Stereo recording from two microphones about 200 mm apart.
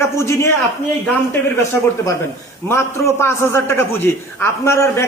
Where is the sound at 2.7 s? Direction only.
15° left (ahead or behind).